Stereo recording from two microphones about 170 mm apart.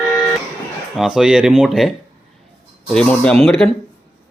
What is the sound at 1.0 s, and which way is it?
Speech, centre (ahead or behind).